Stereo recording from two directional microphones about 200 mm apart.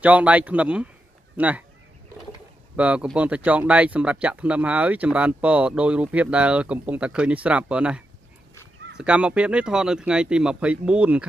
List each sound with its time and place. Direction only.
0.0 s speech: 5° right (ahead or behind)
2.7 s speech: 5° right (ahead or behind)